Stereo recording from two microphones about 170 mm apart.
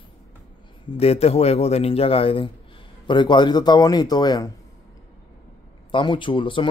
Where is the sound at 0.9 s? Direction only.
35° left (ahead or behind).